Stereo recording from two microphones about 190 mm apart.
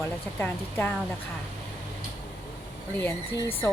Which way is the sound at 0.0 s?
10° left (ahead or behind).